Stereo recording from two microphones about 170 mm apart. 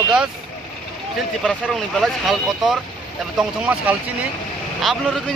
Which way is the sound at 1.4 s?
5° left (ahead or behind).